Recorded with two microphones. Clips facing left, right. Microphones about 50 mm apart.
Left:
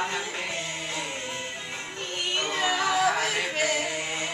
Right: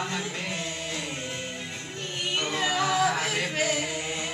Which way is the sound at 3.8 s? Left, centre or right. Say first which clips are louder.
Left 1 dB; left.